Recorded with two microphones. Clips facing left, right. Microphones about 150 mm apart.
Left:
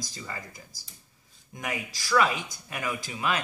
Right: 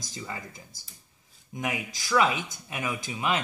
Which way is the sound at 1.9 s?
20° right (ahead or behind).